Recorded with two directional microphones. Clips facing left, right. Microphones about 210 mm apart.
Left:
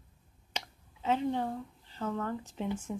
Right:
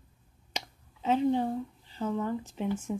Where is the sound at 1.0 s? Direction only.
15° right (ahead or behind).